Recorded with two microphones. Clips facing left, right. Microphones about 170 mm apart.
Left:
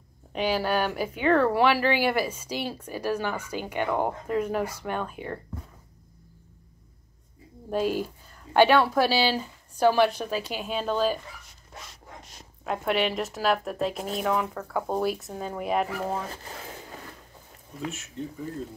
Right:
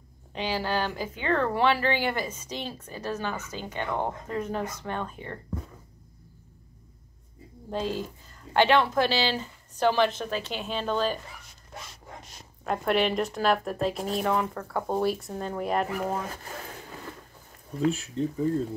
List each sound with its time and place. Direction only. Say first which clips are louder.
0.3 s a woman's voice: left 3 dB; 10° left (ahead or behind)
8.5 s a woman's voice: left 2 dB; 10° left (ahead or behind)
12.6 s speech: right 1 dB; centre (ahead or behind)
17.8 s speech: right 9 dB; 35° right (ahead or behind)